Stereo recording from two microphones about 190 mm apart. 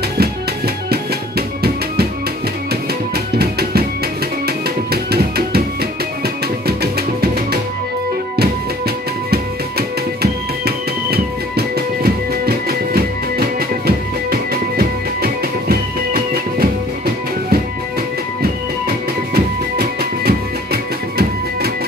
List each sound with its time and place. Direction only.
3.3 s music: 55° right (ahead or behind)
9.3 s music: 55° right (ahead or behind)
19.3 s music: 55° right (ahead or behind)